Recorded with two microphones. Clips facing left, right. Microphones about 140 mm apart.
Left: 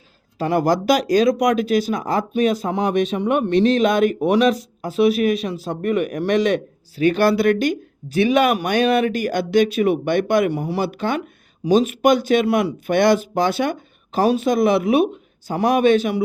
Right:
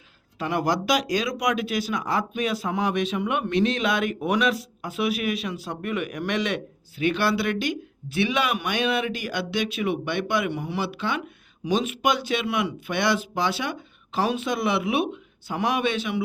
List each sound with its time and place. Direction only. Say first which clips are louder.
0.3 s speech: left 6 dB; 40° left (ahead or behind)